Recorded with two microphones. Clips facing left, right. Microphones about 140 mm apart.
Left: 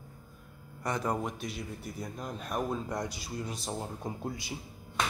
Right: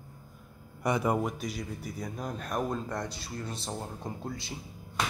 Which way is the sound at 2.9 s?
15° left (ahead or behind).